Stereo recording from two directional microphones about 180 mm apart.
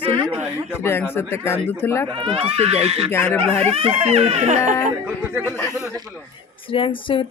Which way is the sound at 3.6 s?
35° right (ahead or behind).